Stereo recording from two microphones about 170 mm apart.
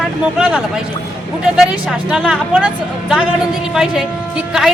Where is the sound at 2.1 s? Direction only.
5° right (ahead or behind).